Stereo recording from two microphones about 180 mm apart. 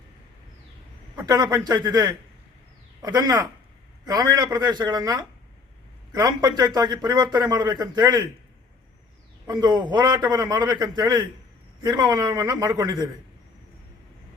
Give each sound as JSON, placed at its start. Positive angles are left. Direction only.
{"t": 1.1, "sound": "a man's voice", "side_deg": -20}
{"t": 9.5, "sound": "a man's voice", "side_deg": -25}